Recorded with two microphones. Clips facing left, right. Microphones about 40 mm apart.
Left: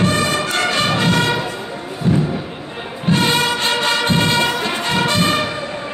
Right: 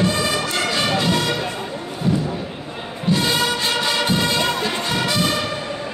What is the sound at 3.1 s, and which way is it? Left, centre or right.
Music, left.